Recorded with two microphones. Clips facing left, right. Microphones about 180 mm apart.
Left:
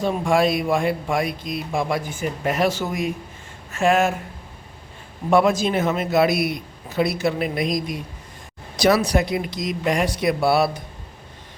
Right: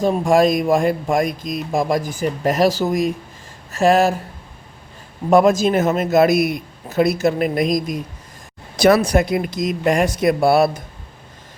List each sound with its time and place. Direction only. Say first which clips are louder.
0.0 s speech: right 4 dB; 40° right (ahead or behind)
3.7 s a sound: right 4 dB; 40° right (ahead or behind)
5.3 s a man's voice: right 4 dB; 45° right (ahead or behind)